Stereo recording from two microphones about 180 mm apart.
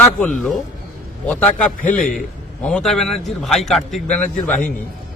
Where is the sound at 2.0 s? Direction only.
45° left (ahead or behind).